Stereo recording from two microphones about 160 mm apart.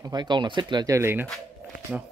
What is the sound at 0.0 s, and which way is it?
Speech, 25° right (ahead or behind).